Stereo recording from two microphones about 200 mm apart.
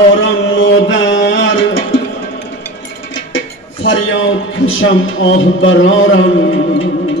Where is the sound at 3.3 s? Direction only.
70° left (ahead or behind).